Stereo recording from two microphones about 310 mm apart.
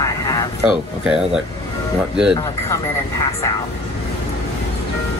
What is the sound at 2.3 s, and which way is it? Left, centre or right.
Speech, centre.